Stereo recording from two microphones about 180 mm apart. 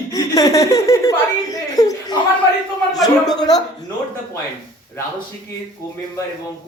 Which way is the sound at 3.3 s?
20° left (ahead or behind).